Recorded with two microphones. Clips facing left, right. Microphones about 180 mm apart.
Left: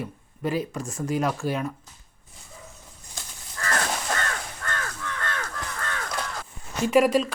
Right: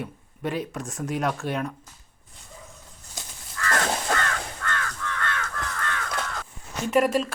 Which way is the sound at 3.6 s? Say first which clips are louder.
Right 2 dB; 35° left (ahead or behind).